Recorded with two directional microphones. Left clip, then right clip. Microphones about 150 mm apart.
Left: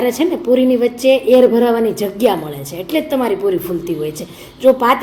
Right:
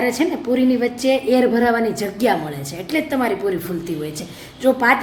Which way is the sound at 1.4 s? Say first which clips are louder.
Left 6 dB; 10° left (ahead or behind).